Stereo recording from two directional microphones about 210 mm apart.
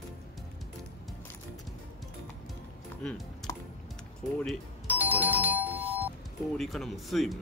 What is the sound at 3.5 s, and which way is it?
Music, 15° left (ahead or behind).